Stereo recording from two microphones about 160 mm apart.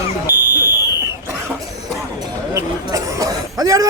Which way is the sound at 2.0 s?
15° right (ahead or behind).